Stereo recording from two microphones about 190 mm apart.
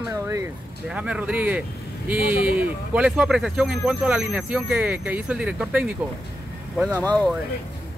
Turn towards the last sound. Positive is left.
turn(degrees=5)  # may be behind; listen again after turning